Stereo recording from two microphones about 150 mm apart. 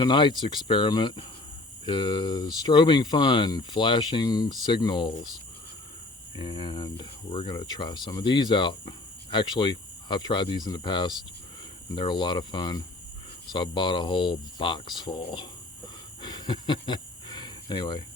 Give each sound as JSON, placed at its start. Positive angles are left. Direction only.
{"t": 0.0, "sound": "speech", "side_deg": 30}
{"t": 6.4, "sound": "speech", "side_deg": 30}
{"t": 16.2, "sound": "a sound", "side_deg": 30}